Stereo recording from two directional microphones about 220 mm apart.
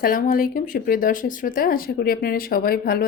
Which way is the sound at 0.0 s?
40° left (ahead or behind).